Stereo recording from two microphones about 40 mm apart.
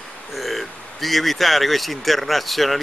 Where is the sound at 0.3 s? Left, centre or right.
Centre.